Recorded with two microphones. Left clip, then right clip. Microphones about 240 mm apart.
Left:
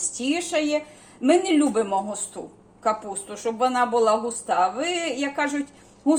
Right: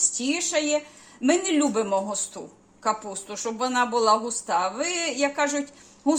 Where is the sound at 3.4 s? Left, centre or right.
Right.